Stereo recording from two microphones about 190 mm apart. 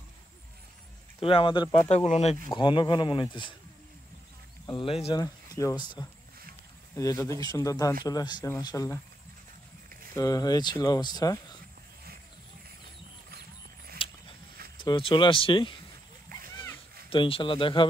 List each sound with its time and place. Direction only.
1.2 s speech: 25° left (ahead or behind)
4.6 s speech: 30° left (ahead or behind)
5.2 s speech: 20° left (ahead or behind)
10.1 s speech: 20° left (ahead or behind)
14.0 s a sound: 30° left (ahead or behind)
14.8 s speech: 25° left (ahead or behind)
17.1 s speech: 25° left (ahead or behind)